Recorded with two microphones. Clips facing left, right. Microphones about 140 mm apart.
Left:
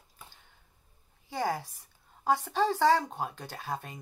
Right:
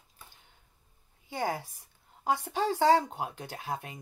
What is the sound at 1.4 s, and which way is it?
Speech, 20° right (ahead or behind).